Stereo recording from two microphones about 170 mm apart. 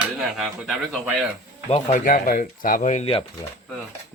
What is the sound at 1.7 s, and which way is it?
Speech, 45° left (ahead or behind).